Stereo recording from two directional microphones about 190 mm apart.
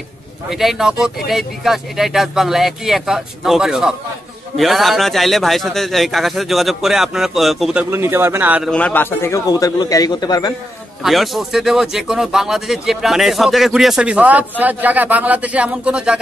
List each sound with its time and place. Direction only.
0.5 s a man's voice: centre (ahead or behind)
7.9 s a man's voice: 10° right (ahead or behind)
8.6 s a man's voice: 5° left (ahead or behind)
11.0 s a man's voice: centre (ahead or behind)